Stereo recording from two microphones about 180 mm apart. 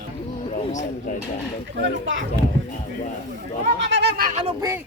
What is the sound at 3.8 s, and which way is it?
Speech, 75° right (ahead or behind).